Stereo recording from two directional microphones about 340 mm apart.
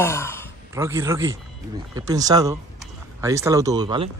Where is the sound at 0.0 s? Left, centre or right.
Centre.